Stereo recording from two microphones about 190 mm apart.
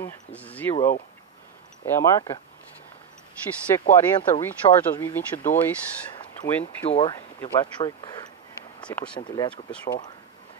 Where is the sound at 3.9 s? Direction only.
25° left (ahead or behind).